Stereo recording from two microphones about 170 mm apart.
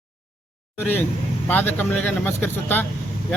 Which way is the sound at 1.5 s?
10° left (ahead or behind).